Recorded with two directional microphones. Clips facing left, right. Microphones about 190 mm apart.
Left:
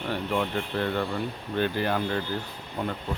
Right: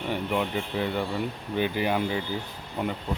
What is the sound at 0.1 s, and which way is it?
Speech, 5° right (ahead or behind).